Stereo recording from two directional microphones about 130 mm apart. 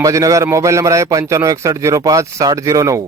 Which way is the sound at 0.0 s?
25° right (ahead or behind).